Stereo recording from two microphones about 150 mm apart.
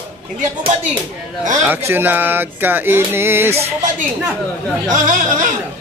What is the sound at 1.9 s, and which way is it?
Speech, 15° right (ahead or behind).